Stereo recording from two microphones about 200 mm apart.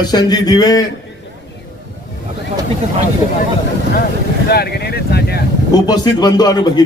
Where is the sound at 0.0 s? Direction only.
20° left (ahead or behind).